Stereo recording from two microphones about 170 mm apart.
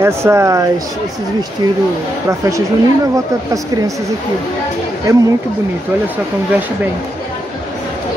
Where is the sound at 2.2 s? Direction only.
15° right (ahead or behind).